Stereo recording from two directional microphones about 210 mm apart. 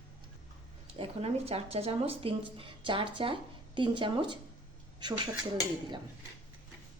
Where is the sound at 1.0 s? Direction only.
30° right (ahead or behind).